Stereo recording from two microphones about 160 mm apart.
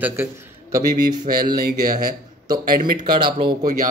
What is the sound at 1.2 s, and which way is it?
Speech, 65° right (ahead or behind).